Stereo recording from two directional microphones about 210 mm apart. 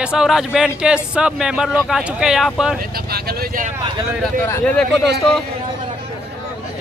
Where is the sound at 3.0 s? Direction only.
50° right (ahead or behind).